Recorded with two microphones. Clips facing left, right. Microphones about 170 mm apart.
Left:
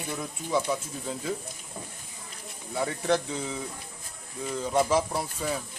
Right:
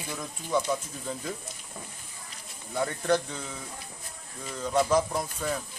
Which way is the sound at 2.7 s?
Centre (ahead or behind).